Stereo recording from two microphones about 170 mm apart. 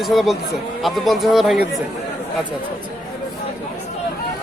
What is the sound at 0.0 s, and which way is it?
Speech, centre (ahead or behind).